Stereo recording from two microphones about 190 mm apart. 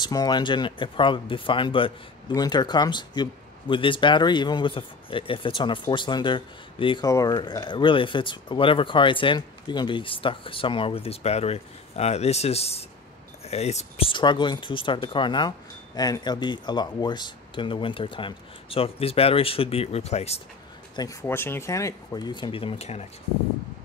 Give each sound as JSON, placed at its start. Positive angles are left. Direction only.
{"t": 0.0, "sound": "speech", "side_deg": 20}
{"t": 20.9, "sound": "speech", "side_deg": 20}